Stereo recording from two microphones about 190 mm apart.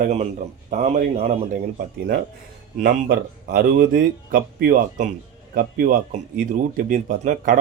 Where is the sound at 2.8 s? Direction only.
45° right (ahead or behind).